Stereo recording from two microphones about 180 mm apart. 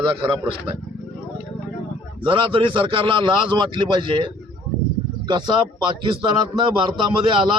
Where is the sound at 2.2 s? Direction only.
30° right (ahead or behind).